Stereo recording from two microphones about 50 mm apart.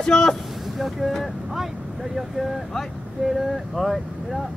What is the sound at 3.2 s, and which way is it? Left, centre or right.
Speech, centre.